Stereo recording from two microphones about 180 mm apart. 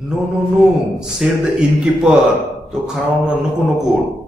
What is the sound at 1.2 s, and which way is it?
Speech, 5° right (ahead or behind).